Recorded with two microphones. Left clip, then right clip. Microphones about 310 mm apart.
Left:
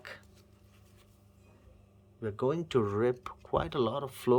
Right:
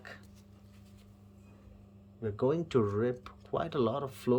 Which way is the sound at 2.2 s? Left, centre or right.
Centre.